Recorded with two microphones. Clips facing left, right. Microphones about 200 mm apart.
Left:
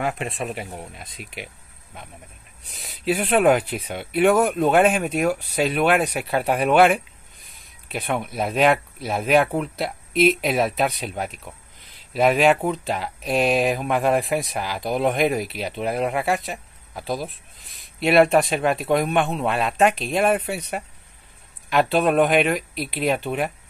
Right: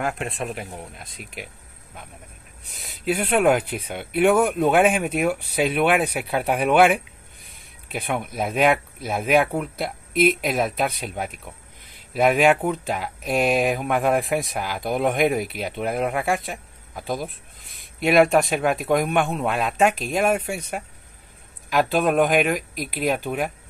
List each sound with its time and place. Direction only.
0.0 s speech: centre (ahead or behind)
2.7 s speech: centre (ahead or behind)
22.0 s speech: centre (ahead or behind)
22.6 s speech: 45° right (ahead or behind)
22.9 s speech: centre (ahead or behind)